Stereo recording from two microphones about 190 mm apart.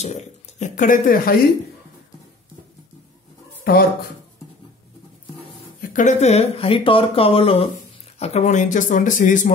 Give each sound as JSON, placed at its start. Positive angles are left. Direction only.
{"t": 0.0, "sound": "speech", "side_deg": 35}
{"t": 3.7, "sound": "speech", "side_deg": 55}
{"t": 5.8, "sound": "speech", "side_deg": 40}